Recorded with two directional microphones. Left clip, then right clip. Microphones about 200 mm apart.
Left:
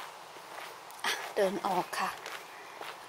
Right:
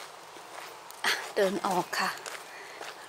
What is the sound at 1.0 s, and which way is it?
Speech, 15° right (ahead or behind).